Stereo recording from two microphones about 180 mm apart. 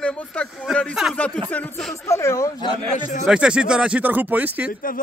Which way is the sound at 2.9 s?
50° left (ahead or behind).